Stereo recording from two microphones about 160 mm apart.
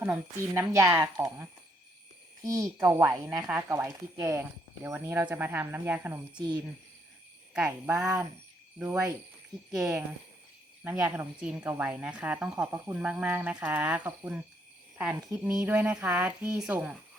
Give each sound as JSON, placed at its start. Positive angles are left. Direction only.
{"t": 0.0, "sound": "a woman's voice", "side_deg": -15}
{"t": 7.5, "sound": "speech", "side_deg": -5}
{"t": 7.9, "sound": "a woman's voice", "side_deg": -20}